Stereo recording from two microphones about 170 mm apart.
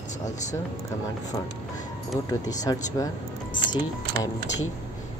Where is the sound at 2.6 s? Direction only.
20° left (ahead or behind).